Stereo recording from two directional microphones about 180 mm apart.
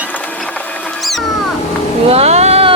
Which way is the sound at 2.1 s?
35° right (ahead or behind).